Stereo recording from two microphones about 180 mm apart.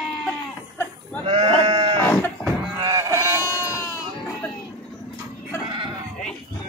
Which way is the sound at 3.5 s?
15° left (ahead or behind).